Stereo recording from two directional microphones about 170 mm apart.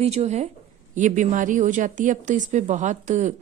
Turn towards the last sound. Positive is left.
turn(degrees=-45)  # may be behind; listen again after turning